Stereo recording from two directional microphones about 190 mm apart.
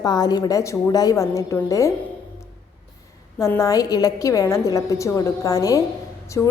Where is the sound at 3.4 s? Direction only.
15° left (ahead or behind).